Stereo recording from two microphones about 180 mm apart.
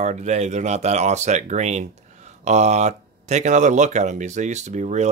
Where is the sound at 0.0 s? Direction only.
40° right (ahead or behind).